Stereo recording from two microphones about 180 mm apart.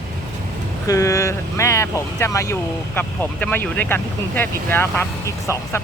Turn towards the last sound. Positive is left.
turn(degrees=15)  # may be behind; listen again after turning